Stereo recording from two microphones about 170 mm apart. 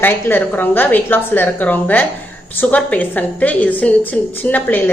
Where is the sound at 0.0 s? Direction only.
10° left (ahead or behind).